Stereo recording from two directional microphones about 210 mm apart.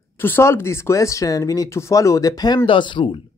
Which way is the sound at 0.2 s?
10° left (ahead or behind).